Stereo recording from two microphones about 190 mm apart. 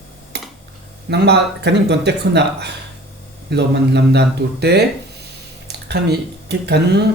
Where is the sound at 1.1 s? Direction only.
60° right (ahead or behind).